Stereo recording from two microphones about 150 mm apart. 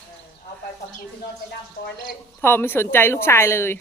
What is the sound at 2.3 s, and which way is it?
Speech, 15° left (ahead or behind).